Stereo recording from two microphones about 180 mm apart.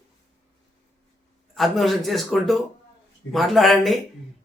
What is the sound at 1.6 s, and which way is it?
A man's voice, centre (ahead or behind).